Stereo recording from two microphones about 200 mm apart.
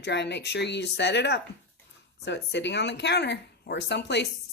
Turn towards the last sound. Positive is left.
turn(degrees=60)  # may be behind; listen again after turning